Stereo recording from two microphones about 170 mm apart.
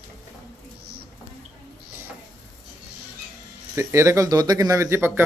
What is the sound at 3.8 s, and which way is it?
A man's voice, 15° right (ahead or behind).